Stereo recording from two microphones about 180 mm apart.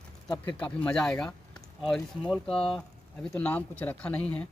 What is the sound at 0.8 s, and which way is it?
Speech, 5° left (ahead or behind).